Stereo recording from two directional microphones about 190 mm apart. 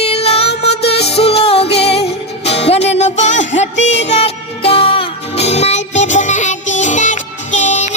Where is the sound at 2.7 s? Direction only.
35° left (ahead or behind).